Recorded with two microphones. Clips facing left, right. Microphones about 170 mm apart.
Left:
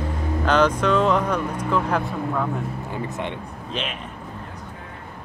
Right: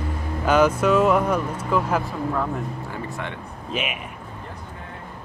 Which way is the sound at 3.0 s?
20° left (ahead or behind).